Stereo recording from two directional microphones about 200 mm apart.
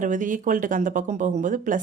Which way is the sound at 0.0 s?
40° right (ahead or behind).